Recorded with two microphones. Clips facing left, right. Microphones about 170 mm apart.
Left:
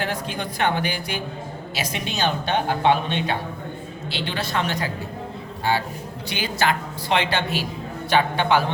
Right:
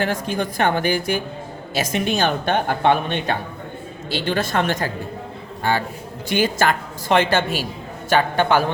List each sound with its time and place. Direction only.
0.0 s speech: 45° right (ahead or behind)